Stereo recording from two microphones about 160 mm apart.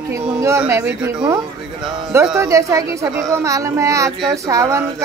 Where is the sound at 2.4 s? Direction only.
20° right (ahead or behind).